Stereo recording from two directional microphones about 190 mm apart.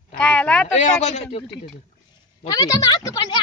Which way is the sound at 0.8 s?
35° left (ahead or behind).